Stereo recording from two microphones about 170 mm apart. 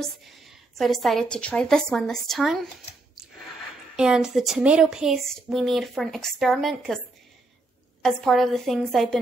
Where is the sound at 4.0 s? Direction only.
5° right (ahead or behind).